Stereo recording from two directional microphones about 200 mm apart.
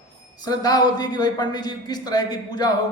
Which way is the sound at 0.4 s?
20° left (ahead or behind).